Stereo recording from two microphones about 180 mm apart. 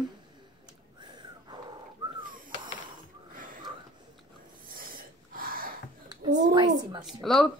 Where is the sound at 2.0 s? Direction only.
20° right (ahead or behind).